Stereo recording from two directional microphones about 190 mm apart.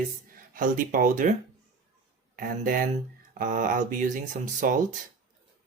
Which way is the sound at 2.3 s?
50° right (ahead or behind).